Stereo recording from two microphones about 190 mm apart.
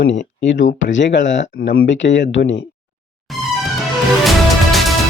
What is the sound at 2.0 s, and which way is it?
Speech, 75° left (ahead or behind).